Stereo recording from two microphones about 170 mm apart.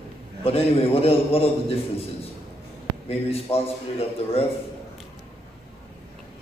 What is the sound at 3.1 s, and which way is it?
A man's voice, 35° left (ahead or behind).